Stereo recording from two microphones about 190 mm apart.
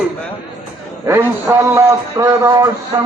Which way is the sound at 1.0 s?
15° right (ahead or behind).